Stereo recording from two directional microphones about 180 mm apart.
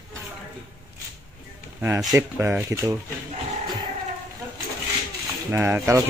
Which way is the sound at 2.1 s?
10° right (ahead or behind).